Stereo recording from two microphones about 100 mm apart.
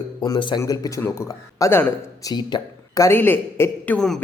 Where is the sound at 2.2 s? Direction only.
40° left (ahead or behind).